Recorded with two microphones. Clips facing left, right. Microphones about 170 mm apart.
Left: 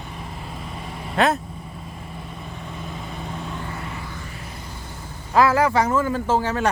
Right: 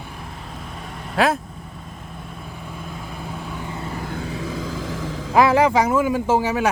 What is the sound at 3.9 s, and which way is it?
Vehicle, 45° right (ahead or behind).